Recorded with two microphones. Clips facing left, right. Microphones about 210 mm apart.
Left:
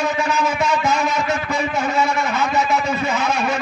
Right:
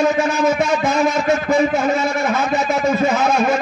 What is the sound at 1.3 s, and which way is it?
A man's voice, 45° right (ahead or behind).